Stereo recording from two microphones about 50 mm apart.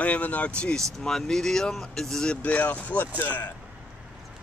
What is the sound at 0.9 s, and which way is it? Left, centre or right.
Speech, centre.